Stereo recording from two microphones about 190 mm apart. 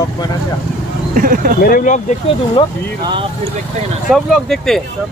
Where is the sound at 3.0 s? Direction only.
25° right (ahead or behind).